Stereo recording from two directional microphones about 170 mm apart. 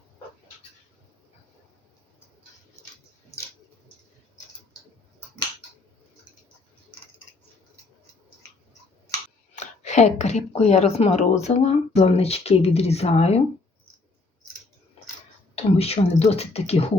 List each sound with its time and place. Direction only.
9.6 s speech: 40° left (ahead or behind)
15.5 s speech: 35° left (ahead or behind)